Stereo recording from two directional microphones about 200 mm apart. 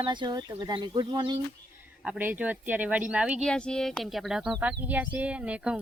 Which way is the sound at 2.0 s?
5° right (ahead or behind).